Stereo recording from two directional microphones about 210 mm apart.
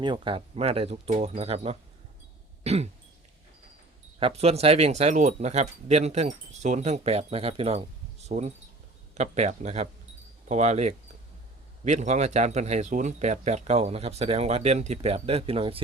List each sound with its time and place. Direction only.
0.0 s speech: 25° right (ahead or behind)
4.2 s speech: 30° right (ahead or behind)